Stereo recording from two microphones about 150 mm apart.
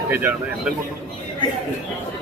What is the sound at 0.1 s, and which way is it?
Speech, 10° right (ahead or behind).